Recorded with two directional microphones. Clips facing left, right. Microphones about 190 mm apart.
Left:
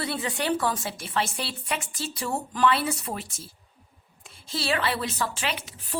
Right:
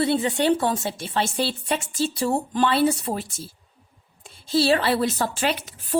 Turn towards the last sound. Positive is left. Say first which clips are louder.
# right 8 dB
turn(degrees=-45)  # may be behind; listen again after turning